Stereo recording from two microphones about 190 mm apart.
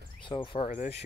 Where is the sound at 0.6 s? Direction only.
40° left (ahead or behind).